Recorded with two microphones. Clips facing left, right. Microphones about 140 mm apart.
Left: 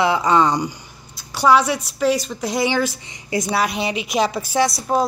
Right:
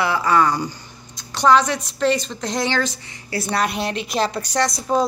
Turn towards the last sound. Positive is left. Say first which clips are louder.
# left 2 dB
turn(degrees=5)  # may be behind; listen again after turning